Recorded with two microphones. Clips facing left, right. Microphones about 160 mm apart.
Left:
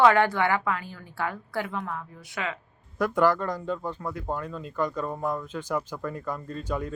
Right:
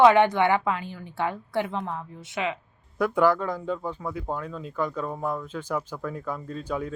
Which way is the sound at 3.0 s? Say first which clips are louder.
Right 1 dB; 10° right (ahead or behind).